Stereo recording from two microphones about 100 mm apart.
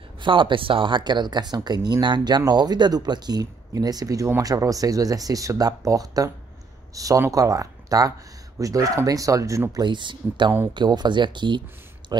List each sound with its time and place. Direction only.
0.2 s speech: 55° right (ahead or behind); by 9.8 s 35° right (ahead or behind)
9.8 s speech: 50° right (ahead or behind)